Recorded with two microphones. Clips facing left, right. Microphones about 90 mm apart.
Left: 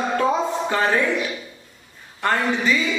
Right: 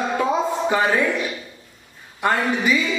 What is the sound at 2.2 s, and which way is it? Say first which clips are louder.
Speech: right 1 dB; 15° right (ahead or behind).